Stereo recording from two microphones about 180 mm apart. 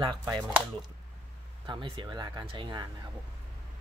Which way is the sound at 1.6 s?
25° right (ahead or behind).